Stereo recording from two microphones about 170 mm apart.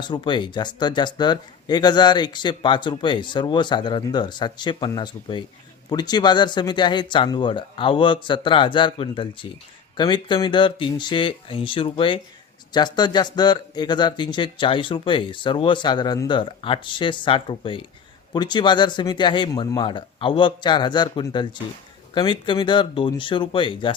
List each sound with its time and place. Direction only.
0.0 s speech: 25° left (ahead or behind)